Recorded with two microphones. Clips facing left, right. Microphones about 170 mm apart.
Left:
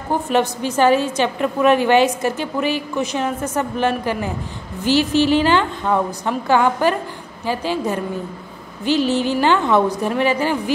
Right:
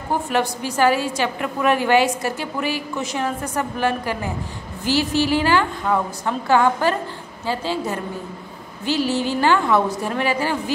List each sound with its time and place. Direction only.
0.3 s a woman's voice: 20° left (ahead or behind)